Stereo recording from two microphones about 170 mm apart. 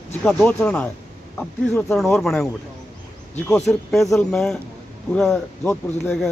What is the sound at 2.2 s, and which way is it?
Speech, centre (ahead or behind).